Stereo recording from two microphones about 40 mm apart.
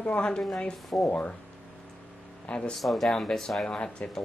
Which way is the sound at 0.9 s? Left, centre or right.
Left.